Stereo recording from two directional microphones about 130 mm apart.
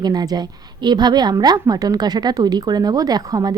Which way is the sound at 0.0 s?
30° right (ahead or behind).